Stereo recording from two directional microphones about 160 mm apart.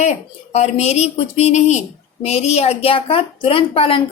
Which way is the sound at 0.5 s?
45° left (ahead or behind).